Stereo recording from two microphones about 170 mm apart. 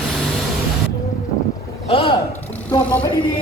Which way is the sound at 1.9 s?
30° left (ahead or behind).